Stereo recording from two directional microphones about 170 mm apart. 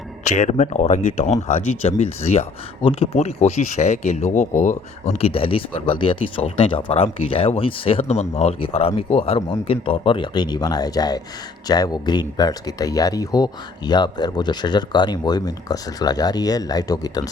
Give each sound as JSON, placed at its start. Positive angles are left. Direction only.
{"t": 0.3, "sound": "speech", "side_deg": 45}